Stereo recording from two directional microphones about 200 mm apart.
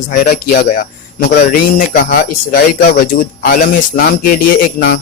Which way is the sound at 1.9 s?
50° left (ahead or behind).